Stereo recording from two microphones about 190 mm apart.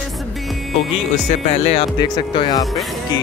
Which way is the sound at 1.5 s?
35° left (ahead or behind).